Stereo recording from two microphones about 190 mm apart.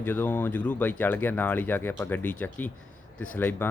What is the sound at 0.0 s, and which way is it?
Speech, 10° left (ahead or behind).